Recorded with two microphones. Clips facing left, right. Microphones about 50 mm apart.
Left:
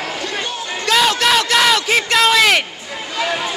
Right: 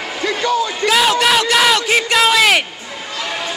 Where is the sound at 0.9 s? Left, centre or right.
Centre.